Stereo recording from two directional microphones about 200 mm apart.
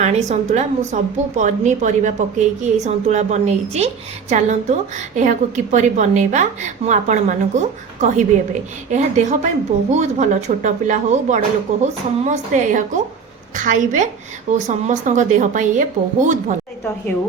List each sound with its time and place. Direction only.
0.0 s a woman's voice: 35° right (ahead or behind)